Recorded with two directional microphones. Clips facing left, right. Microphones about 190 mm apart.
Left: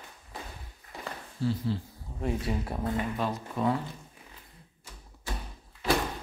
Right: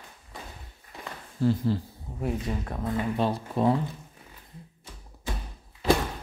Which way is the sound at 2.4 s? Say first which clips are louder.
Even; 10° left (ahead or behind).